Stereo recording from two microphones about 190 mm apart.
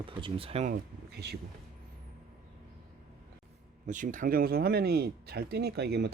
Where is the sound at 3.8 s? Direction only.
40° right (ahead or behind).